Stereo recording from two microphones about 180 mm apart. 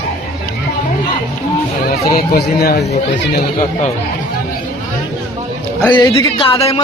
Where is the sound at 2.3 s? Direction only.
60° left (ahead or behind).